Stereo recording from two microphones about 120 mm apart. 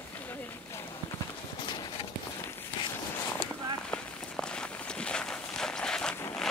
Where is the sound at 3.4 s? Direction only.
5° left (ahead or behind).